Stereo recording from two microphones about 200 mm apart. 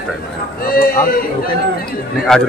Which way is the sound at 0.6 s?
45° left (ahead or behind).